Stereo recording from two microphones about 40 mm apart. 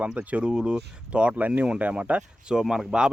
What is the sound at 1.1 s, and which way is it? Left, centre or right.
Speech, right.